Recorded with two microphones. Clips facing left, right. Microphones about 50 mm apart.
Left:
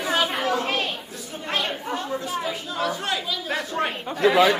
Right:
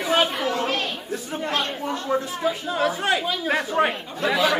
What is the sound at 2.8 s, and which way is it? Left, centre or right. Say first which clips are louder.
A woman's voice: right 4 dB; right.